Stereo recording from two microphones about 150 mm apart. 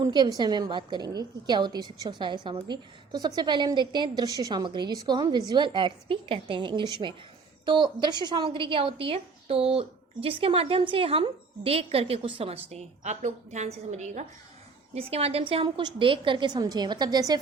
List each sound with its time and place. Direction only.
0.0 s a woman's voice: 25° right (ahead or behind)